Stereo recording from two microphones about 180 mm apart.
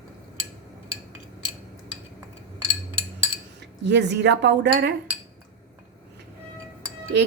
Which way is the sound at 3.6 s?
70° right (ahead or behind).